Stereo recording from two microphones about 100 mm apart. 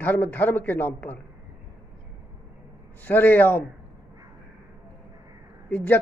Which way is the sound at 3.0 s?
20° left (ahead or behind).